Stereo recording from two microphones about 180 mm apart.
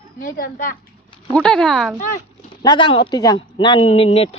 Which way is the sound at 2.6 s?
25° left (ahead or behind).